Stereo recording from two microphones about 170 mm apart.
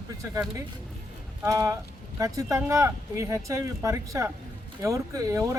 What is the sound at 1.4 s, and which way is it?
Speech, 20° right (ahead or behind).